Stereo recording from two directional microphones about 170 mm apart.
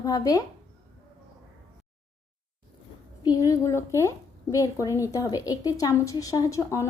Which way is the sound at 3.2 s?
20° left (ahead or behind).